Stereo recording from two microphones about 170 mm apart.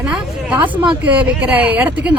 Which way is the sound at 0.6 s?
30° right (ahead or behind).